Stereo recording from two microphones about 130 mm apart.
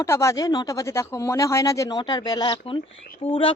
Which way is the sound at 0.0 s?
20° left (ahead or behind).